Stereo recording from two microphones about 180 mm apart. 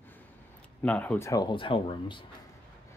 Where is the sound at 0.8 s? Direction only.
10° left (ahead or behind); by 2.2 s 30° left (ahead or behind).